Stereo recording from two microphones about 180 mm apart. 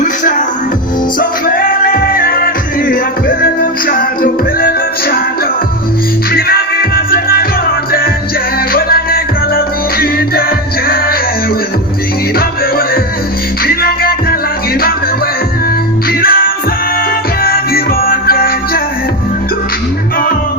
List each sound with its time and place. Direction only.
0.0 s music: 45° left (ahead or behind)
6.3 s music: 55° left (ahead or behind)
8.7 s music: 55° left (ahead or behind)
12.4 s music: 55° left (ahead or behind)
16.2 s music: 55° left (ahead or behind)